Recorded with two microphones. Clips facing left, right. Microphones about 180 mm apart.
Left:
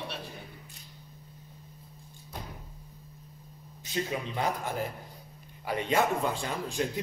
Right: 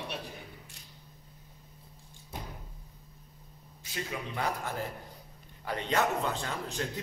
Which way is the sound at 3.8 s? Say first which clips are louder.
Left 5 dB; 25° left (ahead or behind).